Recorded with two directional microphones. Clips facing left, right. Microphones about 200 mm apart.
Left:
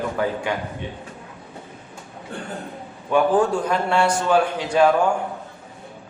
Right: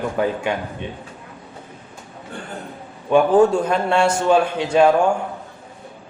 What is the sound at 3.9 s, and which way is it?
A man's voice, 25° right (ahead or behind).